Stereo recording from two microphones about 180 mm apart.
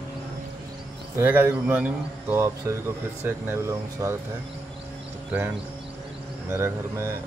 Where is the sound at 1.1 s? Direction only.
10° right (ahead or behind).